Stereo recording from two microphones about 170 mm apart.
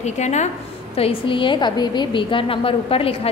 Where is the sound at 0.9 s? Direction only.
30° left (ahead or behind).